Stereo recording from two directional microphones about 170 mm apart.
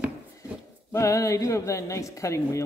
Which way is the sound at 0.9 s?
20° left (ahead or behind).